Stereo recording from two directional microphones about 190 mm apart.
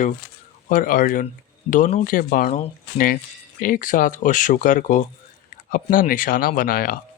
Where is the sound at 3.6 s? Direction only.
45° left (ahead or behind).